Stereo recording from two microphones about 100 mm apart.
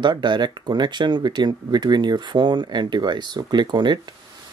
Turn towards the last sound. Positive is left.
turn(degrees=-50)  # may be behind; listen again after turning